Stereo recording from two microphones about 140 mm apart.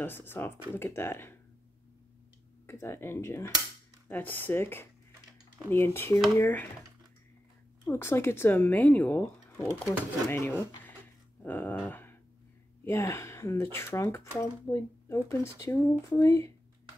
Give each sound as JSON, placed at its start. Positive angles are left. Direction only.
{"t": 0.0, "sound": "speech", "side_deg": 15}
{"t": 2.6, "sound": "speech", "side_deg": 20}
{"t": 7.8, "sound": "speech", "side_deg": 15}
{"t": 11.4, "sound": "dog", "side_deg": 15}
{"t": 12.8, "sound": "speech", "side_deg": 20}